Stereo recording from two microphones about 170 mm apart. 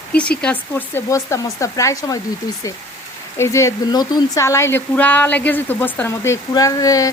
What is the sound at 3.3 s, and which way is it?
Speech, 15° left (ahead or behind).